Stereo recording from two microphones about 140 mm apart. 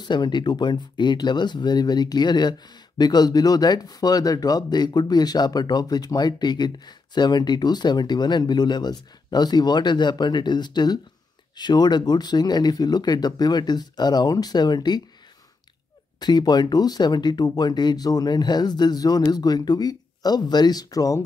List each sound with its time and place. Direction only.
0.0 s speech: 35° left (ahead or behind)
16.2 s speech: 30° left (ahead or behind)